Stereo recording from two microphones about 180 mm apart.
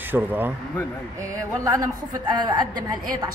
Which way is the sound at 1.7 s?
20° right (ahead or behind).